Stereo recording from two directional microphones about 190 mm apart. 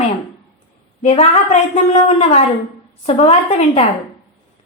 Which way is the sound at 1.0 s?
35° left (ahead or behind).